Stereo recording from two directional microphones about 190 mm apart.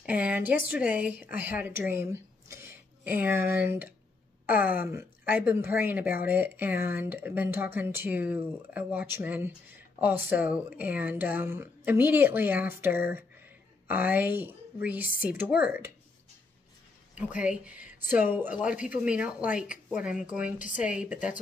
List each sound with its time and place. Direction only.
0.0 s a woman's voice: 10° right (ahead or behind)
17.4 s a woman's voice: 5° right (ahead or behind)
20.5 s a woman's voice: 45° left (ahead or behind)
20.8 s a woman's voice: 5° right (ahead or behind)